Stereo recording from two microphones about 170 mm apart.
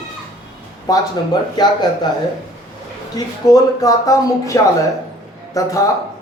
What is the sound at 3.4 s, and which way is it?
A man's voice, 20° left (ahead or behind).